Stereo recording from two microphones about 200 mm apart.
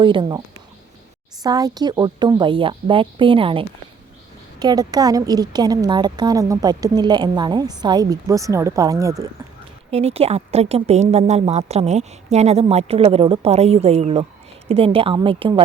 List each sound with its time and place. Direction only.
0.0 s a woman's voice: 25° right (ahead or behind)
9.9 s a woman's voice: 30° right (ahead or behind)